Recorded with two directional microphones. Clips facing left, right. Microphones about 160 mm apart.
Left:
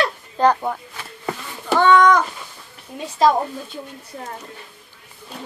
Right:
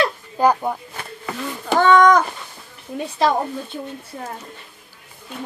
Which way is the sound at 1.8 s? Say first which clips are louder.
Right 1 dB; 45° right (ahead or behind).